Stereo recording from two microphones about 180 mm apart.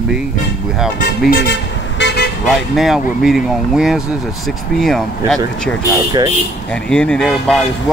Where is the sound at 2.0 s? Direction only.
70° left (ahead or behind).